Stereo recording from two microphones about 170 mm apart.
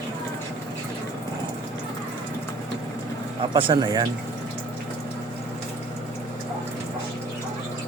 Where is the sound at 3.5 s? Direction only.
30° right (ahead or behind).